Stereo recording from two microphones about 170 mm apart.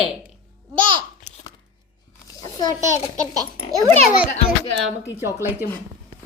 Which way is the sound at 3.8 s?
Centre (ahead or behind).